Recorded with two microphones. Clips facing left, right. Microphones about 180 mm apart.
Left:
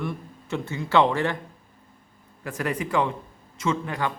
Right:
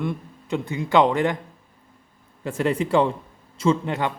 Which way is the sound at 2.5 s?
25° right (ahead or behind).